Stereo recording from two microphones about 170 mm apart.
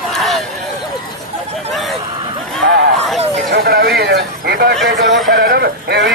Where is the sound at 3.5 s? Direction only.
65° right (ahead or behind).